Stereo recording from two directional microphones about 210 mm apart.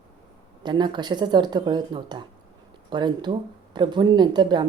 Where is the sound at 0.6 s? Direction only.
20° right (ahead or behind).